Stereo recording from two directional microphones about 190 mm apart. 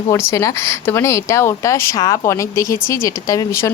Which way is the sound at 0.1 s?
15° left (ahead or behind).